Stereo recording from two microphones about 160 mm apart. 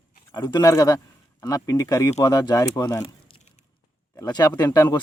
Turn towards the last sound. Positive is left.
turn(degrees=25)  # may be behind; listen again after turning